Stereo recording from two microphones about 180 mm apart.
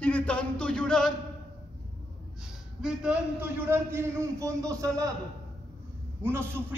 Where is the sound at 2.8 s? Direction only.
5° right (ahead or behind).